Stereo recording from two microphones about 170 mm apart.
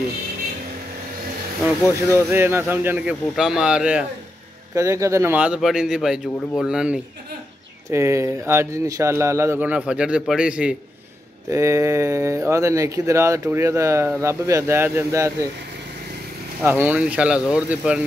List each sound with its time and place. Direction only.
2.0 s a man's voice: 15° right (ahead or behind)
4.7 s a man's voice: 20° right (ahead or behind)
7.9 s a man's voice: 15° right (ahead or behind)
11.5 s a man's voice: 20° right (ahead or behind)
16.6 s a man's voice: 10° right (ahead or behind)